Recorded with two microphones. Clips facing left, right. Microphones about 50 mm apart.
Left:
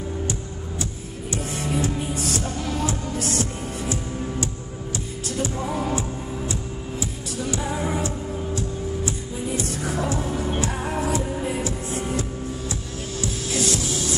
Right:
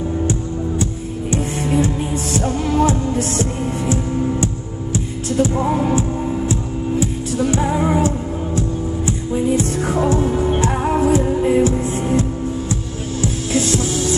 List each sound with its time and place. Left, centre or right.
1.3 s music: right
9.6 s music: right